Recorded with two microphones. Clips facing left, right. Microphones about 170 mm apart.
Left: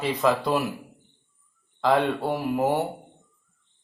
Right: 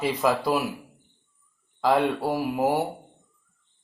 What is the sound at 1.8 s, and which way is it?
Speech, 10° right (ahead or behind).